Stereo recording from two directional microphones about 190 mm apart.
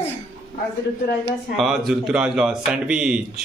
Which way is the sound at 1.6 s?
Centre (ahead or behind).